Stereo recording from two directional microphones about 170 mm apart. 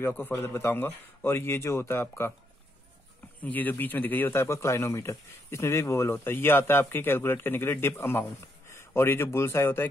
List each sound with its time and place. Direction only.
0.0 s a man's voice: 10° left (ahead or behind)
3.4 s a man's voice: 10° left (ahead or behind)